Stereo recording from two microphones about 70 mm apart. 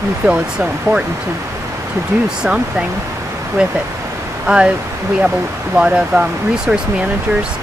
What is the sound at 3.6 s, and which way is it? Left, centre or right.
Speech, centre.